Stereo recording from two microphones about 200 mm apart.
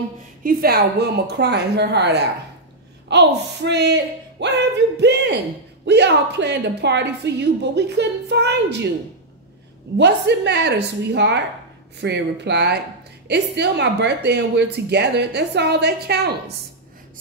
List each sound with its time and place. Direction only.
0.4 s a woman's voice: 50° right (ahead or behind)
9.9 s a woman's voice: 60° right (ahead or behind)